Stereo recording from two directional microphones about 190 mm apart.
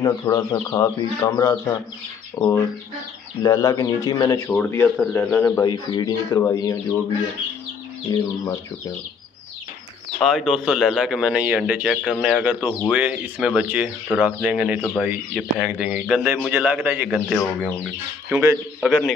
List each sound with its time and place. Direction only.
0.0 s speech: 20° left (ahead or behind)
4.6 s speech: 10° left (ahead or behind)
5.7 s speech: 20° left (ahead or behind)
8.1 s speech: 20° left (ahead or behind)
10.1 s speech: centre (ahead or behind)
18.8 s speech: centre (ahead or behind)